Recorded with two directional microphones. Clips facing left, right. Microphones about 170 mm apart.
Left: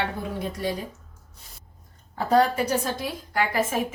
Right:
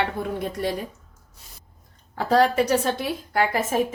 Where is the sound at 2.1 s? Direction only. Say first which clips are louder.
Right 2 dB; 85° right; by 3.1 s 70° right (ahead or behind).